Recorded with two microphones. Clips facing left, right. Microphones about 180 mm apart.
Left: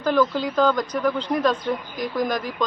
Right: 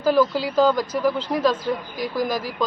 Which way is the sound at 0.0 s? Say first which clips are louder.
Right 2 dB; 5° right (ahead or behind).